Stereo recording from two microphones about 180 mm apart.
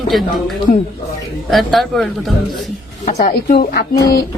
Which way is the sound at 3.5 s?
60° left (ahead or behind).